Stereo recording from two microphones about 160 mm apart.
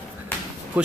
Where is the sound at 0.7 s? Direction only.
10° right (ahead or behind).